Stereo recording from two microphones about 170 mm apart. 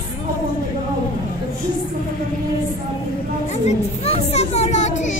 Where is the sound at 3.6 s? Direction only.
40° left (ahead or behind).